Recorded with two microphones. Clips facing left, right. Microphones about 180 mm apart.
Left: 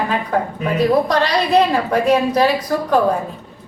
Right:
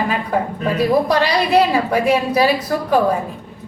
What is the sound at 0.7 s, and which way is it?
A woman's voice, 10° right (ahead or behind).